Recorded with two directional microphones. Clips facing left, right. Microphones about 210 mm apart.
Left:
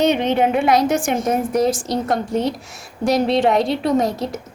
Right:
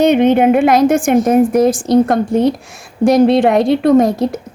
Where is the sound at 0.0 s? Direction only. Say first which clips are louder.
Right 7 dB; 55° right (ahead or behind).